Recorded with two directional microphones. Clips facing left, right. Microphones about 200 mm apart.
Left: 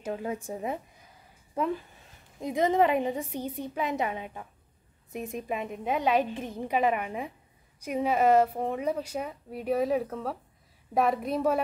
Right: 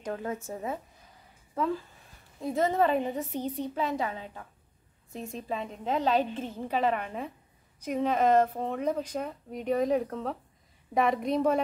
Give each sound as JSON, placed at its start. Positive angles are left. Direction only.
{"t": 0.0, "sound": "a woman's voice", "side_deg": 10}